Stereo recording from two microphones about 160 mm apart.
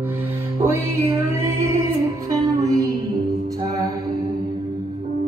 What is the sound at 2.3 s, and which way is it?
Music, 20° right (ahead or behind).